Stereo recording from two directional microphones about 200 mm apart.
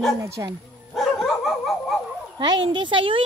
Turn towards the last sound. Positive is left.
turn(degrees=-25)  # may be behind; listen again after turning